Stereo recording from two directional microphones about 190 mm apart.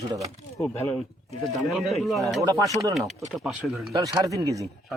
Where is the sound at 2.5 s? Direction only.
20° right (ahead or behind).